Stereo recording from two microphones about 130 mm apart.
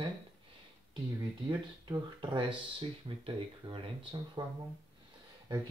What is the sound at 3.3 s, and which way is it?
Speech, 40° right (ahead or behind).